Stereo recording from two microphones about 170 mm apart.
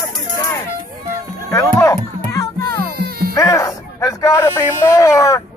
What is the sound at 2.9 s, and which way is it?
Music, 65° right (ahead or behind).